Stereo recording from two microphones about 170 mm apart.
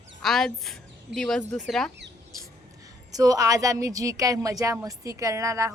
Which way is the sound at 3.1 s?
20° right (ahead or behind).